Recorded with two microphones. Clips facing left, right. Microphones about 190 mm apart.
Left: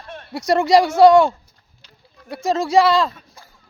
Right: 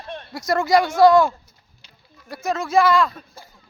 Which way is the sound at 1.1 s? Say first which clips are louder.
Left 3 dB; 25° left (ahead or behind).